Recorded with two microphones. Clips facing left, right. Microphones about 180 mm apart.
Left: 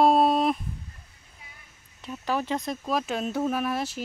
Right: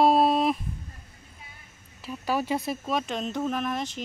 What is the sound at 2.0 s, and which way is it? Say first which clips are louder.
Speech: right 1 dB; 5° right (ahead or behind).